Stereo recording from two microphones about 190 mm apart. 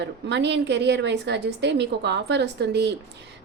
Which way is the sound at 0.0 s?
65° right (ahead or behind).